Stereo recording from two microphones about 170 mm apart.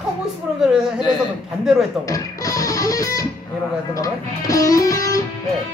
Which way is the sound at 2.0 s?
20° left (ahead or behind).